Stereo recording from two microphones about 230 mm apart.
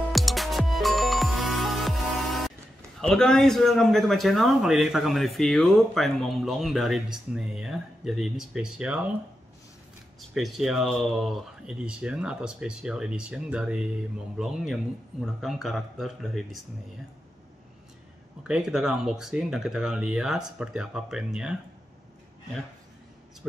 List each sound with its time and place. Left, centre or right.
0.1 s music: centre
3.0 s speech: centre
10.3 s speech: centre
18.5 s speech: centre